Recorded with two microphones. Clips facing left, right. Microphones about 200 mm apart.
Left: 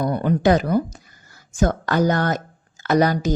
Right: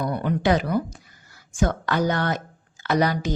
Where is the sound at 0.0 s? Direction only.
40° left (ahead or behind).